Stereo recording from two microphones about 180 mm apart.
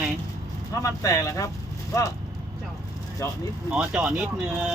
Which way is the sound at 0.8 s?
15° left (ahead or behind).